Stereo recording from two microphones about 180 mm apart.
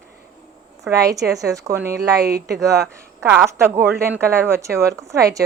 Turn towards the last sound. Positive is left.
turn(degrees=-20)  # may be behind; listen again after turning